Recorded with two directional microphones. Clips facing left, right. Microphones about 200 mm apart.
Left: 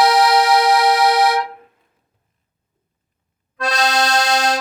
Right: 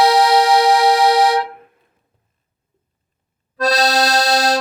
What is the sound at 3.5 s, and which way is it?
Accordion, 35° right (ahead or behind).